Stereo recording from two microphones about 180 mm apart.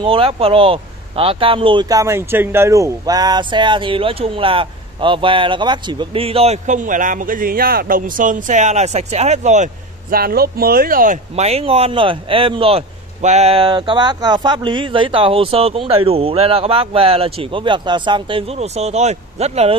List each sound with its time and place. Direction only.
0.0 s speech: 30° right (ahead or behind)